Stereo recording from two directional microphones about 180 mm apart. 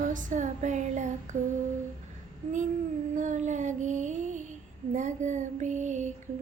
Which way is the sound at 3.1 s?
45° right (ahead or behind).